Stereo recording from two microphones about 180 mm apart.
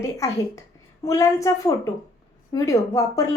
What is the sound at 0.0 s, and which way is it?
Speech, 15° left (ahead or behind).